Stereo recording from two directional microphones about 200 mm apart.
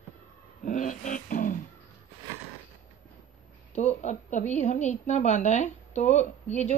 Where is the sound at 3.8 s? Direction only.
35° left (ahead or behind).